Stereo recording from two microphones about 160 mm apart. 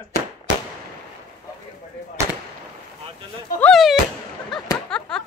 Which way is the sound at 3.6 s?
Centre (ahead or behind).